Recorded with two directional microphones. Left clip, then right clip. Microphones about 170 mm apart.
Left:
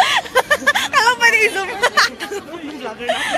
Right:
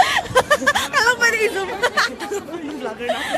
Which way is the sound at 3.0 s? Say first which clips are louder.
Left 4 dB; 15° left (ahead or behind).